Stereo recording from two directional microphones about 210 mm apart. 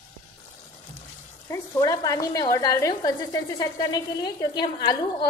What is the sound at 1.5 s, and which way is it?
Speech, 15° left (ahead or behind).